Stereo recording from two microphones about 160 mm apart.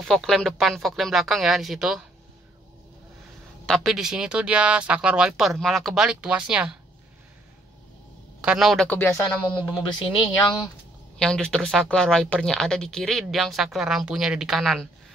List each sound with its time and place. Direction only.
0.0 s speech: centre (ahead or behind)
3.6 s speech: centre (ahead or behind)
8.4 s speech: 5° right (ahead or behind)
8.9 s speech: 15° left (ahead or behind)
9.8 s speech: 30° left (ahead or behind)
11.1 s speech: 5° left (ahead or behind)